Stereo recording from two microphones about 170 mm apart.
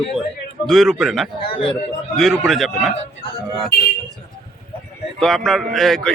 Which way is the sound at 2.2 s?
Centre (ahead or behind).